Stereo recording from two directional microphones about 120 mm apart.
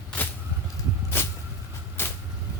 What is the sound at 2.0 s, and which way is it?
Vehicle, 20° left (ahead or behind).